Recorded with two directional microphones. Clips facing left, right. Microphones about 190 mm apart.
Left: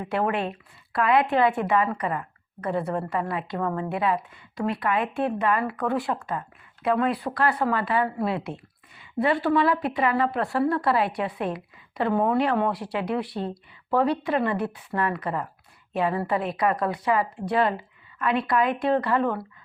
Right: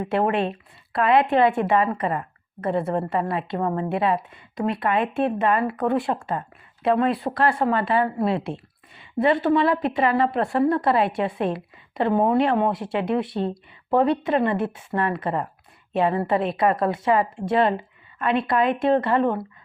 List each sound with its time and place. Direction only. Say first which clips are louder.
0.1 s speech: right 3 dB; 25° right (ahead or behind)